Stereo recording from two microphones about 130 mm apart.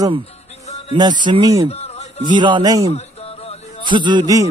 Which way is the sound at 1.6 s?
55° left (ahead or behind).